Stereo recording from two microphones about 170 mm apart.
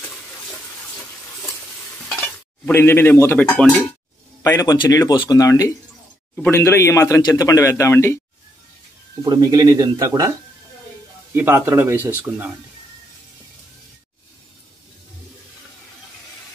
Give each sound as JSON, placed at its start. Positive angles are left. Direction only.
{"t": 2.0, "sound": "stir", "side_deg": 5}
{"t": 4.4, "sound": "a man's voice", "side_deg": 15}
{"t": 9.2, "sound": "speech", "side_deg": -25}
{"t": 11.3, "sound": "speech", "side_deg": -15}